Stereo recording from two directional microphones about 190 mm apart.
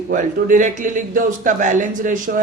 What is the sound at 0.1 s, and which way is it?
A woman's voice, 45° right (ahead or behind).